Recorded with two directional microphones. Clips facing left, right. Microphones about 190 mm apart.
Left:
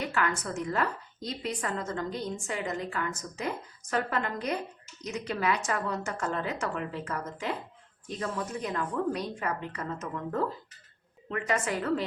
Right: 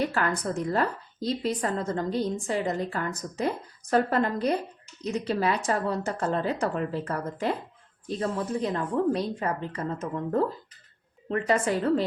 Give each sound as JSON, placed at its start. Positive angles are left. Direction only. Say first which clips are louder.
{"t": 0.0, "sound": "a woman's voice", "louder": "right 4 dB", "side_deg": -35}